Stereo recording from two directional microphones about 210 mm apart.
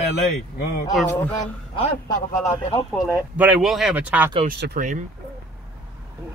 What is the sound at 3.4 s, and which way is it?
Speech, 5° right (ahead or behind).